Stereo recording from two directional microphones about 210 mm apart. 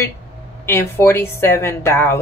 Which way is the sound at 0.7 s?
10° left (ahead or behind).